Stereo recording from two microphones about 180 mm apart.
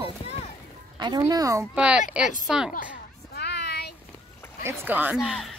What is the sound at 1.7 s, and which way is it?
A woman's voice, 5° right (ahead or behind).